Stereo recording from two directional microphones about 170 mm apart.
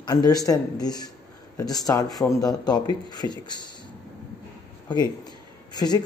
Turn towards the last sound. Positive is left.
turn(degrees=25)  # may be behind; listen again after turning